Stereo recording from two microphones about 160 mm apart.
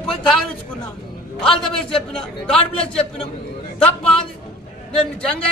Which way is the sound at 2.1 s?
5° left (ahead or behind).